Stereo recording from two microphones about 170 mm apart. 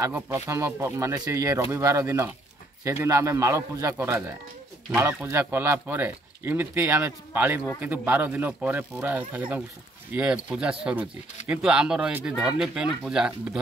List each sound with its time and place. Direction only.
0.0 s speech: 15° right (ahead or behind)